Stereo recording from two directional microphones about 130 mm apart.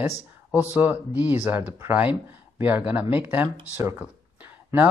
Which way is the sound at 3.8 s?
15° right (ahead or behind).